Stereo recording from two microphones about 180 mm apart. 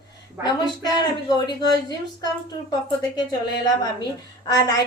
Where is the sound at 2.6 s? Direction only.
20° left (ahead or behind).